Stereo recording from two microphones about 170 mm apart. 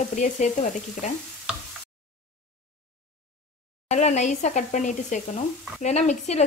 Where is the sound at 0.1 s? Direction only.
45° left (ahead or behind).